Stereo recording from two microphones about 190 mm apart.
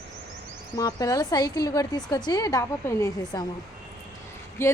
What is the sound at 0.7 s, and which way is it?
Speech, 20° left (ahead or behind).